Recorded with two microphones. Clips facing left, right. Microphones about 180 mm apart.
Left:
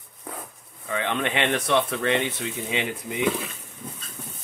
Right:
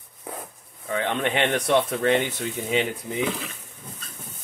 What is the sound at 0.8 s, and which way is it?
Speech, 35° right (ahead or behind).